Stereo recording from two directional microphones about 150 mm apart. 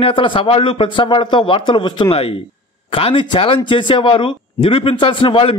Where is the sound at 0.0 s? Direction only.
35° left (ahead or behind).